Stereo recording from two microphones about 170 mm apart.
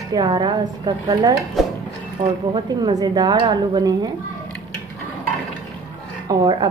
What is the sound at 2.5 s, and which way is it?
A woman's voice, 20° right (ahead or behind).